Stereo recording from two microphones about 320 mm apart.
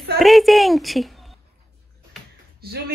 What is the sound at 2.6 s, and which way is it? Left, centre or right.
Speech, right.